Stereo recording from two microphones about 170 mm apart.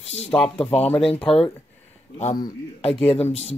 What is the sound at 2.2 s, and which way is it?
Speech, 45° left (ahead or behind).